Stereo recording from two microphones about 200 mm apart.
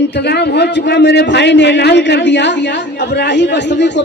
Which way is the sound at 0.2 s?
55° left (ahead or behind).